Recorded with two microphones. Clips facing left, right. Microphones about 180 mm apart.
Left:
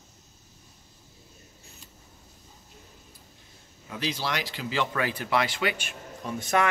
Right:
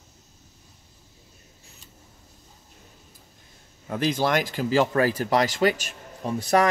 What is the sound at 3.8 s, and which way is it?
Speech, 50° right (ahead or behind).